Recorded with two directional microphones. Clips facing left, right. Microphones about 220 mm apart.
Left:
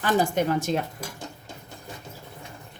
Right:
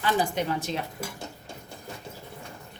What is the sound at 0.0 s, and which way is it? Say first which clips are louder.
Speech: left 4 dB; 50° left (ahead or behind).